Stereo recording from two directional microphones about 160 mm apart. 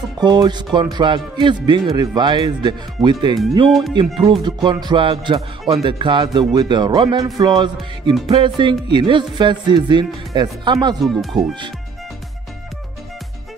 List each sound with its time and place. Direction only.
0.2 s music: 25° right (ahead or behind)
3.6 s speech: centre (ahead or behind)
3.9 s music: 30° right (ahead or behind)
11.3 s speech: centre (ahead or behind)